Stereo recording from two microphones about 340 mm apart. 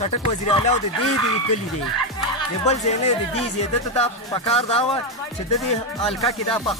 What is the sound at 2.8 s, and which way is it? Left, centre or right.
Speech, centre.